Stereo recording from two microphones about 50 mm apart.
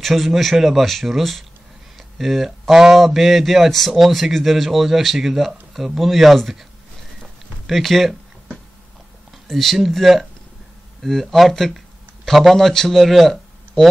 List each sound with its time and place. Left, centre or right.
0.0 s speech: centre
7.6 s speech: centre
9.5 s speech: centre